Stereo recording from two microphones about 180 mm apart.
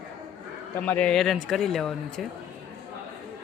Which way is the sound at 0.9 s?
5° left (ahead or behind).